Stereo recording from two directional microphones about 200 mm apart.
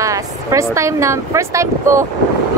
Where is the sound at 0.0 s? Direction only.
15° right (ahead or behind).